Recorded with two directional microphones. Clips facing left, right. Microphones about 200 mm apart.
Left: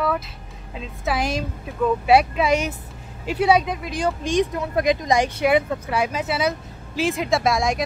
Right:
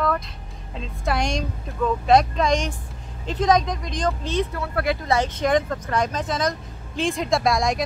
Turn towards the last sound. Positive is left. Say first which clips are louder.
# even
turn(degrees=0)  # may be behind; listen again after turning